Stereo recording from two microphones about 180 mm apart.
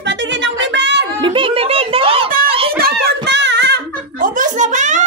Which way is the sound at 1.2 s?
30° right (ahead or behind).